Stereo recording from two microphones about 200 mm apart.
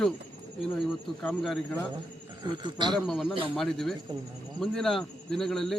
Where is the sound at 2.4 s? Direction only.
20° right (ahead or behind).